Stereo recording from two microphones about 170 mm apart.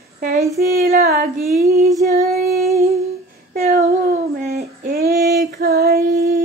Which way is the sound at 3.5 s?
60° right (ahead or behind).